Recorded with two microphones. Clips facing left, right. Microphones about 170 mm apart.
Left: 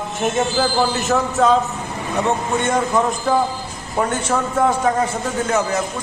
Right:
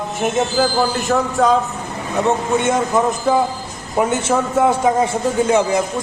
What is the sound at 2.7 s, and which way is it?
A man's voice, 15° right (ahead or behind).